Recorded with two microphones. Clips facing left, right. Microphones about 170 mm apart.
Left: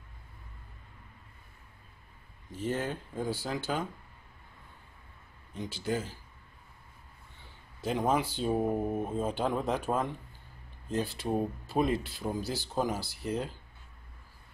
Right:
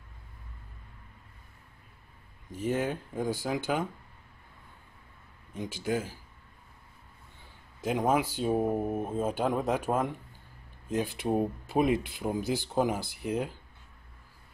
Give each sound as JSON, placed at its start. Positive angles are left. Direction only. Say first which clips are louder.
{"t": 2.5, "sound": "speech", "louder": "right 3 dB", "side_deg": -10}
{"t": 5.5, "sound": "speech", "louder": "right 2 dB", "side_deg": -15}
{"t": 7.8, "sound": "speech", "louder": "right 2 dB", "side_deg": -10}